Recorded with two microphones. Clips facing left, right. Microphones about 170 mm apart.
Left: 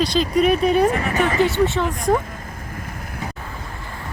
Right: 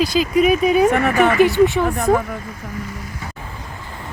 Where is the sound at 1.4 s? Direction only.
20° left (ahead or behind).